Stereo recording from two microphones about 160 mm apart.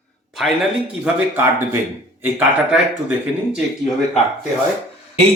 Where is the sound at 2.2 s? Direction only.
15° right (ahead or behind).